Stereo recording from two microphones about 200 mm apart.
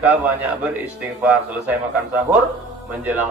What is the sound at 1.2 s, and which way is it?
A man's voice, 5° right (ahead or behind).